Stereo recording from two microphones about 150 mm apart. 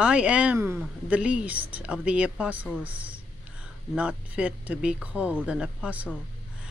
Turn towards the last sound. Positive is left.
turn(degrees=-10)  # may be behind; listen again after turning